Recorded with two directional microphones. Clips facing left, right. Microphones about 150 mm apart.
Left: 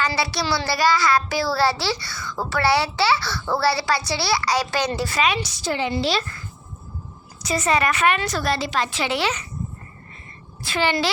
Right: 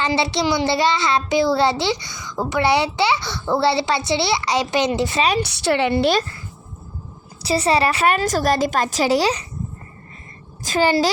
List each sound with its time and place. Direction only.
0.0 s a child's voice: 25° right (ahead or behind)
5.4 s a woman's voice: 70° right (ahead or behind)
7.4 s a woman's voice: 30° right (ahead or behind)
10.6 s a woman's voice: 40° right (ahead or behind)